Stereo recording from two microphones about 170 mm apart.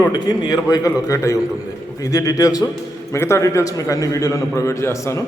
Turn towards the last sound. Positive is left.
turn(degrees=15)  # may be behind; listen again after turning